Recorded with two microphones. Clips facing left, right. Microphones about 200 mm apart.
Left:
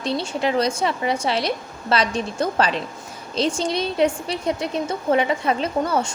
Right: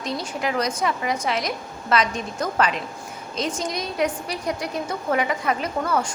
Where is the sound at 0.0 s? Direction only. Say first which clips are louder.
Left 4 dB; 30° left (ahead or behind).